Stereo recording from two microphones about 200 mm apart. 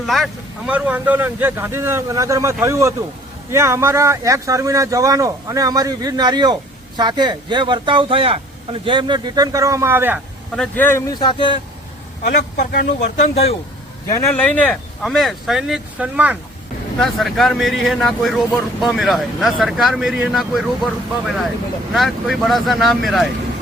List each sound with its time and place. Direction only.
0.0 s speech: centre (ahead or behind)
10.5 s speech: 5° left (ahead or behind); by 11.5 s 25° left (ahead or behind)
13.0 s speech: 30° left (ahead or behind)
14.1 s speech: 15° left (ahead or behind)